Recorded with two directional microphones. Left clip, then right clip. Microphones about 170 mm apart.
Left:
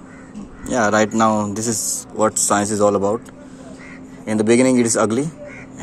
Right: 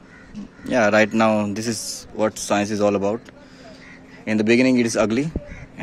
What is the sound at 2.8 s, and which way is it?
Speech, 35° right (ahead or behind).